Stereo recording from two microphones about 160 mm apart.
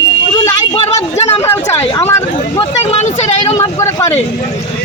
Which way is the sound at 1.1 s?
40° left (ahead or behind).